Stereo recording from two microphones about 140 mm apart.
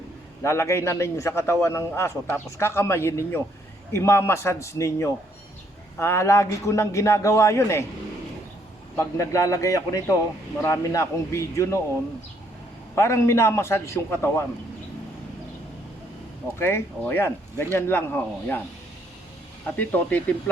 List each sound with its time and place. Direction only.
0.4 s a man's voice: 20° left (ahead or behind)
9.0 s a man's voice: 20° left (ahead or behind)
13.0 s a man's voice: 20° left (ahead or behind)
16.6 s speech: 15° left (ahead or behind)
19.6 s speech: 10° left (ahead or behind)